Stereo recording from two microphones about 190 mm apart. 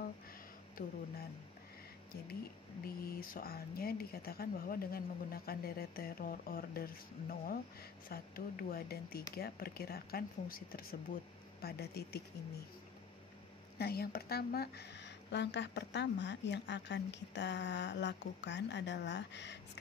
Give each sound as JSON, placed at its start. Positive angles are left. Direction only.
{"t": 0.8, "sound": "speech", "side_deg": 50}
{"t": 2.8, "sound": "speech", "side_deg": 50}
{"t": 13.7, "sound": "speech", "side_deg": 55}